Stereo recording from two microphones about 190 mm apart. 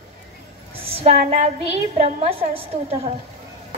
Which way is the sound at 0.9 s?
30° right (ahead or behind).